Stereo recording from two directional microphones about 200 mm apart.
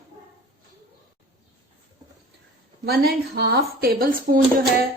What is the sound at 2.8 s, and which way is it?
A woman's voice, 50° right (ahead or behind).